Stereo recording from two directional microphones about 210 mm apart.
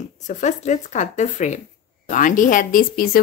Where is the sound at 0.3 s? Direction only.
35° left (ahead or behind).